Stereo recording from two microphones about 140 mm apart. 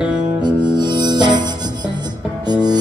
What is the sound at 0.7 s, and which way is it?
Music, 30° right (ahead or behind).